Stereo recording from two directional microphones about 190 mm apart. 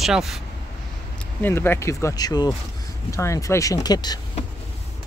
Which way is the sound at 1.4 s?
10° left (ahead or behind).